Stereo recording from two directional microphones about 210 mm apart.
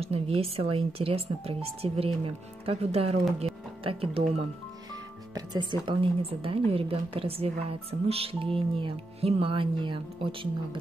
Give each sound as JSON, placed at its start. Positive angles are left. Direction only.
{"t": 0.0, "sound": "speech", "side_deg": -30}
{"t": 3.3, "sound": "music", "side_deg": -25}
{"t": 5.3, "sound": "speech", "side_deg": -20}